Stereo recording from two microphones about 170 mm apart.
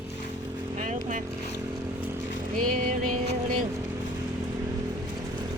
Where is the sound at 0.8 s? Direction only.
45° right (ahead or behind).